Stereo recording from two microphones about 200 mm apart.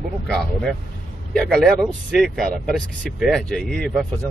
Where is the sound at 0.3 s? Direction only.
Centre (ahead or behind).